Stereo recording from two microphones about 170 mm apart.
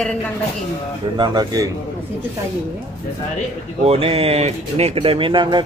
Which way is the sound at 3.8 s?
35° right (ahead or behind).